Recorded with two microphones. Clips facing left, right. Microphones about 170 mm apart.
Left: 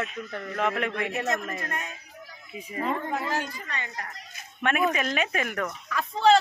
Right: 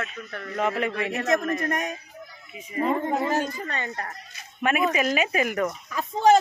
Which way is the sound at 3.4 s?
40° right (ahead or behind).